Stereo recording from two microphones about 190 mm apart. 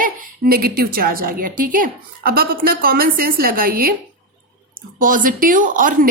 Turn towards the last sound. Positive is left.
turn(degrees=-45)  # may be behind; listen again after turning